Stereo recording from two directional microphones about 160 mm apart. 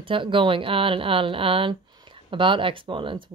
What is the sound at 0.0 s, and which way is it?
Speech, 30° right (ahead or behind).